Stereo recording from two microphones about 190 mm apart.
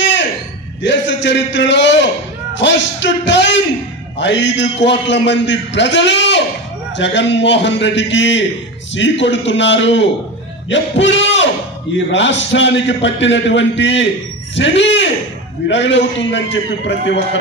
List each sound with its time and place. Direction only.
0.8 s a man's voice: 75° left (ahead or behind)
10.7 s music: 70° left (ahead or behind)
12.1 s a man's voice: 70° left (ahead or behind)
14.5 s a sound: 70° left (ahead or behind)
15.7 s a man's voice: 70° left (ahead or behind)